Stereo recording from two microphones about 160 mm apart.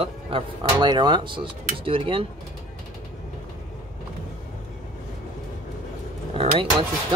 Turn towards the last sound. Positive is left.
turn(degrees=-35)  # may be behind; listen again after turning